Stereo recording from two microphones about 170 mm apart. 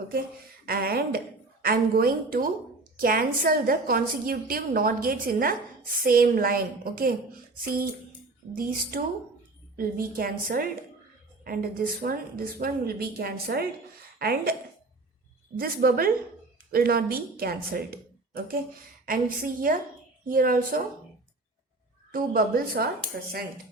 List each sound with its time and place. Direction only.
0.6 s a woman's voice: 60° right (ahead or behind)
15.5 s a woman's voice: 60° right (ahead or behind)
22.1 s a woman's voice: 60° right (ahead or behind)